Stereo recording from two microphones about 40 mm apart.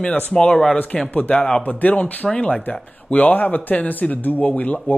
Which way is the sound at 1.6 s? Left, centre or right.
Left.